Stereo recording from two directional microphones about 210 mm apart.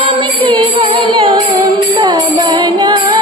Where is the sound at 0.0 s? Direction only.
25° right (ahead or behind).